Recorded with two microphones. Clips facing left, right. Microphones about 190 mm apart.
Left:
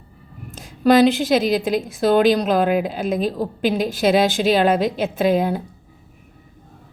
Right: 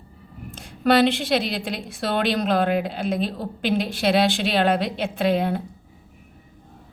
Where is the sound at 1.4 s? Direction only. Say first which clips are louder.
Left 8 dB; 40° left (ahead or behind).